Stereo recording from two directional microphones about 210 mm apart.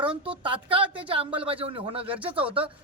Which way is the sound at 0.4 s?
25° right (ahead or behind).